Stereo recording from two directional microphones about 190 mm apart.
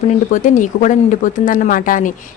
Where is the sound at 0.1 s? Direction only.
40° left (ahead or behind).